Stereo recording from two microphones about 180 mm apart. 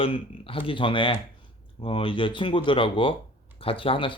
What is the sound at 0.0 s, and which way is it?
Speech, 30° left (ahead or behind).